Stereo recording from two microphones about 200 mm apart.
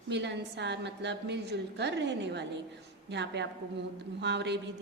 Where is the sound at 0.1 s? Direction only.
60° right (ahead or behind).